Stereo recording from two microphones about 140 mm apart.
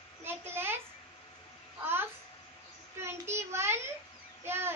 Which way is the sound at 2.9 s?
20° right (ahead or behind).